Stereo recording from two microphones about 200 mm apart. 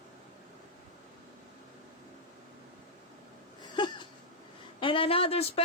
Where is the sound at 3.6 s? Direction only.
20° left (ahead or behind).